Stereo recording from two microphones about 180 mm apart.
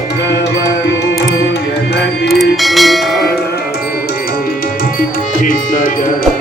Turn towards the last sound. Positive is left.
turn(degrees=50)  # may be behind; listen again after turning